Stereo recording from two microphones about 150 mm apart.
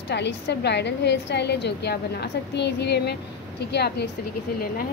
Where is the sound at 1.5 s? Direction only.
90° left.